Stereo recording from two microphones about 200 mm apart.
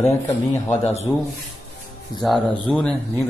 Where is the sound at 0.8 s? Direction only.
30° left (ahead or behind).